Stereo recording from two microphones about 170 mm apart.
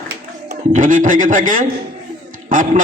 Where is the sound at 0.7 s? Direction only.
50° right (ahead or behind).